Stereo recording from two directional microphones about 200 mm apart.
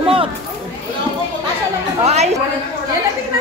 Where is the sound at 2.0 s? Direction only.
35° right (ahead or behind).